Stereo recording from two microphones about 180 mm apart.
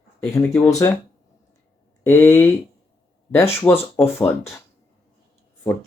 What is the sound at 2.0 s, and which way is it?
Speech, 15° left (ahead or behind).